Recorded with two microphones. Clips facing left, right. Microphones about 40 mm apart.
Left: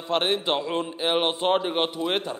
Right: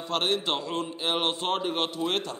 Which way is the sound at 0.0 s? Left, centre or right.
Left.